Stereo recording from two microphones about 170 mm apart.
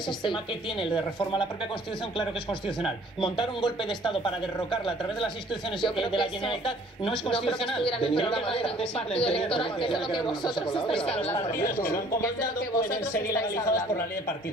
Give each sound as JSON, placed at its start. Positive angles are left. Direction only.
{"t": 2.8, "sound": "speech", "side_deg": 30}
{"t": 7.1, "sound": "speech", "side_deg": 30}
{"t": 13.3, "sound": "speech", "side_deg": 20}